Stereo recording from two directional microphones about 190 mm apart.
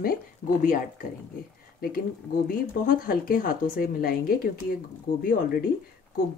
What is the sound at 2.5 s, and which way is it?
Speech, 50° left (ahead or behind).